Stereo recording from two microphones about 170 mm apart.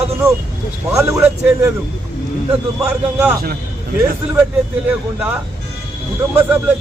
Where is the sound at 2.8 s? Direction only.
15° right (ahead or behind).